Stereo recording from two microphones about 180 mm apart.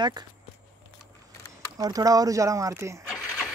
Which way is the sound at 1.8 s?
20° right (ahead or behind).